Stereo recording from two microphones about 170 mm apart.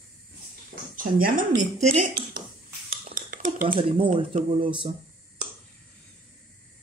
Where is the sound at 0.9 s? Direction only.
55° right (ahead or behind).